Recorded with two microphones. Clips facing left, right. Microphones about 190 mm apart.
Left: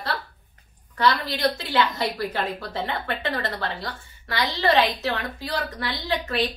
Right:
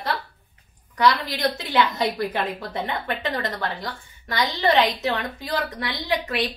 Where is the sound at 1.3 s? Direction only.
20° right (ahead or behind).